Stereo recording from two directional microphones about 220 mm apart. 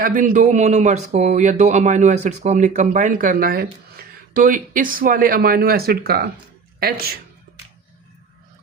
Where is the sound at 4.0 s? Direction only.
45° right (ahead or behind).